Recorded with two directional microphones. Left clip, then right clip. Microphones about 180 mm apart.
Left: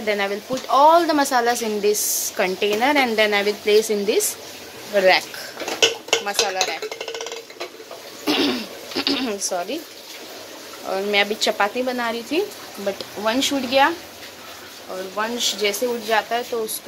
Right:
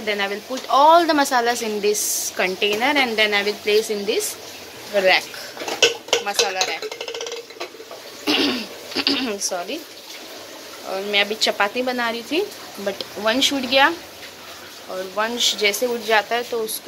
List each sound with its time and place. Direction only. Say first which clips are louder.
0.0 s speech: left 1 dB; 15° left (ahead or behind)
6.2 s speech: right 1 dB; 10° left (ahead or behind)
8.3 s throat clearing: right 1 dB; 10° left (ahead or behind)
10.9 s speech: left 1 dB; 25° left (ahead or behind); by 13.9 s centre (ahead or behind)
15.1 s speech: right 3 dB; centre (ahead or behind)